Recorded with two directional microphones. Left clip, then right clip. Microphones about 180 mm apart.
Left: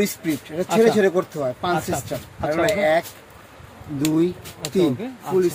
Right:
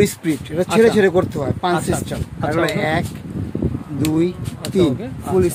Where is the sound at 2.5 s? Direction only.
60° right (ahead or behind).